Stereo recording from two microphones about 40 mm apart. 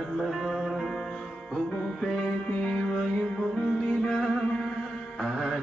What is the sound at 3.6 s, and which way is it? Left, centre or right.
Music, centre.